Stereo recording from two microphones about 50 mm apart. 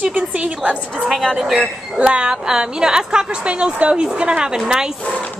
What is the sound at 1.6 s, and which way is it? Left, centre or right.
A woman's voice, right.